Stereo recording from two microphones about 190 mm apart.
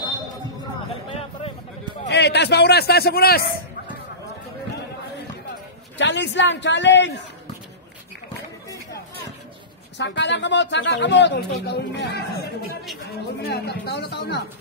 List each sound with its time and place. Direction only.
2.0 s a man's voice: 65° left (ahead or behind)
5.9 s speech: 70° left (ahead or behind)
9.9 s speech: 70° left (ahead or behind)